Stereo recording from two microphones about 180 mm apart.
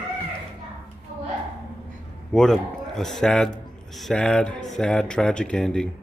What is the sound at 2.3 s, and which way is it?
Speech, centre (ahead or behind).